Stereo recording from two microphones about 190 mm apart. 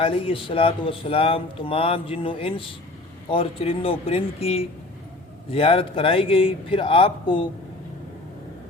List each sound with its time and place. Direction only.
0.0 s speech: 30° left (ahead or behind)